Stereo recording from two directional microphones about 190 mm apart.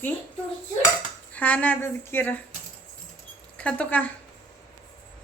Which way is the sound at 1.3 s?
5° left (ahead or behind).